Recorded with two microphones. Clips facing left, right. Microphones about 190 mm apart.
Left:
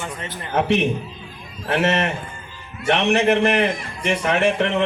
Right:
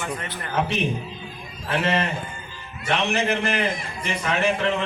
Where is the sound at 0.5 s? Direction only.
65° left (ahead or behind).